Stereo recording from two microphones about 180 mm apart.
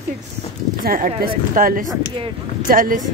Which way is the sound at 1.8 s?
30° right (ahead or behind).